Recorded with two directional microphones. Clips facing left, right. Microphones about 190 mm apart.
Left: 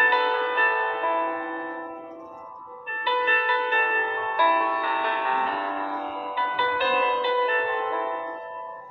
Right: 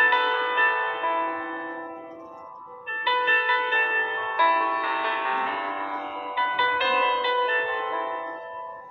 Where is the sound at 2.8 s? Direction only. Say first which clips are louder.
Left 2 dB; 40° left (ahead or behind).